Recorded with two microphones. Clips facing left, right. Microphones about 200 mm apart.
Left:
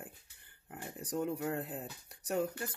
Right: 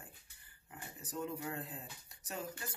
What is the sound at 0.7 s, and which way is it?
Speech, 60° left (ahead or behind).